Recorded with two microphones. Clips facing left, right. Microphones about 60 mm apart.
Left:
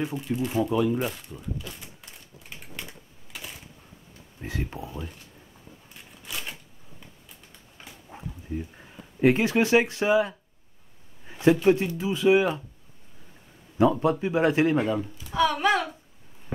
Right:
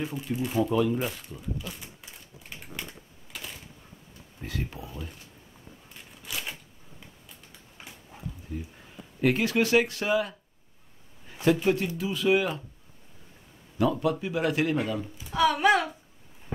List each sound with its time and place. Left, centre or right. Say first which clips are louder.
0.0 s speech: left 3 dB; centre
4.4 s speech: left 2 dB; left
6.2 s shuffling cards: even; centre
8.1 s dog: left 7 dB; left
8.5 s speech: left 7 dB; left
11.2 s a sound: left 3 dB; left
11.6 s speech: left 4 dB; left
13.7 s speech: left 4 dB; left
15.3 s speech: right 1 dB; centre